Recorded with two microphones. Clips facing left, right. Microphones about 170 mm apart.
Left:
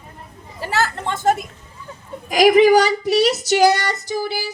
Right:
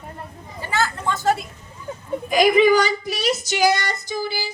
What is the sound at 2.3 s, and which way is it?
Female singing, 90° left.